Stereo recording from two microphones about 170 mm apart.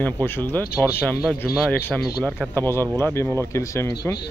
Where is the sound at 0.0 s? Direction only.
10° left (ahead or behind).